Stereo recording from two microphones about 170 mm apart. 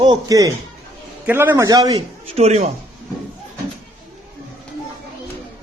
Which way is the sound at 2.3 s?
40° right (ahead or behind).